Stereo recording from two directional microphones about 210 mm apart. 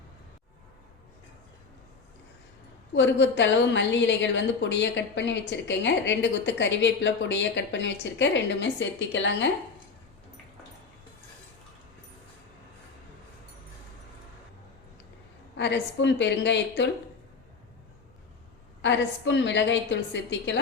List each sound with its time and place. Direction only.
2.9 s a woman's voice: 60° left (ahead or behind)
15.5 s a woman's voice: 55° left (ahead or behind)
18.8 s a woman's voice: 60° left (ahead or behind)